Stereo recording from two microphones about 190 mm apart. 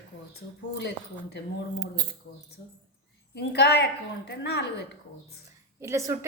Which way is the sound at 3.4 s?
60° left (ahead or behind).